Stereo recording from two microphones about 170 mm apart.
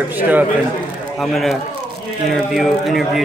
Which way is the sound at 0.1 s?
10° right (ahead or behind).